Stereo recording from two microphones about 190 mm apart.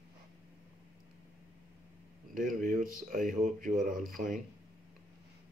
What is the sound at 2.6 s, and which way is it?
Speech, 45° right (ahead or behind).